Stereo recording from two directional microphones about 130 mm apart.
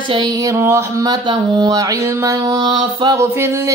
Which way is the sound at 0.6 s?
20° right (ahead or behind).